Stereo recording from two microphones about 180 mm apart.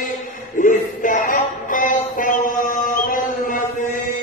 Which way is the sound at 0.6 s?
45° left (ahead or behind).